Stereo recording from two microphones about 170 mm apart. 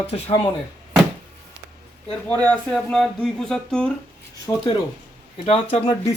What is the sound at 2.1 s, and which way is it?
Speech, 10° left (ahead or behind).